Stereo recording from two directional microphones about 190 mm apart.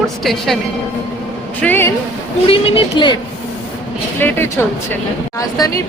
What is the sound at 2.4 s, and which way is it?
Speech, 30° left (ahead or behind).